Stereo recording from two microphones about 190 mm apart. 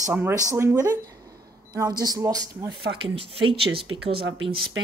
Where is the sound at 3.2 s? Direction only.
30° right (ahead or behind).